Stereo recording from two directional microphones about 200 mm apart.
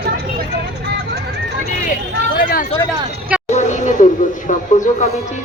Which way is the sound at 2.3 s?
45° left (ahead or behind).